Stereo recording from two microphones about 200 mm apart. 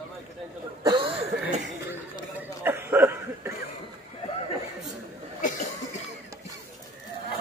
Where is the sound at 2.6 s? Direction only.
10° right (ahead or behind).